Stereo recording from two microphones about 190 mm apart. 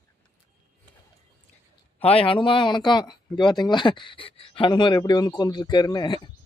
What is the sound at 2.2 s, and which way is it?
Speech, 25° left (ahead or behind).